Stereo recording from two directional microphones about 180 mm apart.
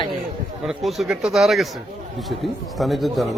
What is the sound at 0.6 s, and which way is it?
Speech, centre (ahead or behind).